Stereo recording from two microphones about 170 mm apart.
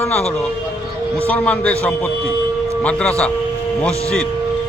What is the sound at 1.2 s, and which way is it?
Speech, 10° left (ahead or behind).